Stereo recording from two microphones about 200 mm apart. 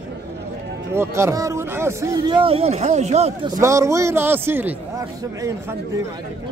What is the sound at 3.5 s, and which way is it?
A man's voice, 15° right (ahead or behind).